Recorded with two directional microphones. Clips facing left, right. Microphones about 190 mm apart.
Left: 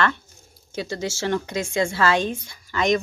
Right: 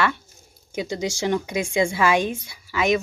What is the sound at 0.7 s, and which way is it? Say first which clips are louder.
Speech: right 2 dB; 15° right (ahead or behind).